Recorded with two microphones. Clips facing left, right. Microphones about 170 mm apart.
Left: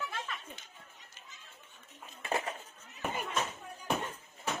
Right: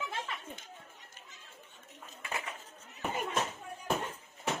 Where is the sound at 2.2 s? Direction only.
35° left (ahead or behind).